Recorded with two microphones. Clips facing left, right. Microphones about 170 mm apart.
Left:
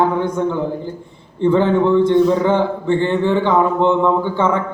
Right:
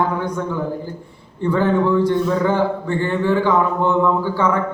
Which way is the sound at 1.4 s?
25° left (ahead or behind).